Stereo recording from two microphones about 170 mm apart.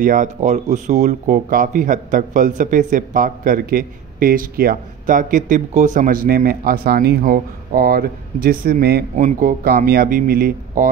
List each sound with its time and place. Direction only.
0.0 s speech: 50° right (ahead or behind)
9.1 s speech: 50° right (ahead or behind)